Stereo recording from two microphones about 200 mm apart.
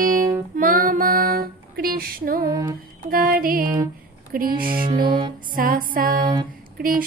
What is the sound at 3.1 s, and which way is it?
Female singing, 45° right (ahead or behind).